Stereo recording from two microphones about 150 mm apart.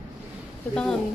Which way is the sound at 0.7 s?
5° left (ahead or behind).